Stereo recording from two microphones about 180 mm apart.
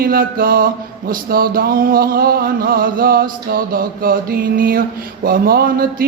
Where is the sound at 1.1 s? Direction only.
55° right (ahead or behind).